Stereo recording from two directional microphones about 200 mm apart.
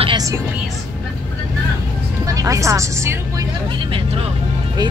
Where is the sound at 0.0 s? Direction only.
20° right (ahead or behind).